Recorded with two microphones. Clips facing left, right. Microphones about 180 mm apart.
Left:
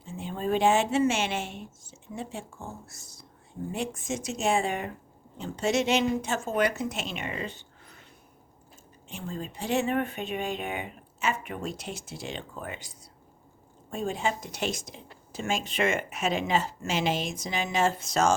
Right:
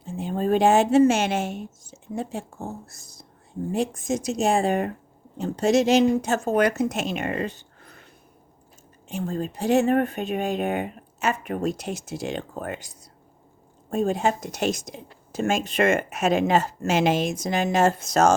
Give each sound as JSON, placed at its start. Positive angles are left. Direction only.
{"t": 0.0, "sound": "a woman's voice", "side_deg": -45}
{"t": 9.0, "sound": "speech", "side_deg": -45}
{"t": 13.9, "sound": "speech", "side_deg": -45}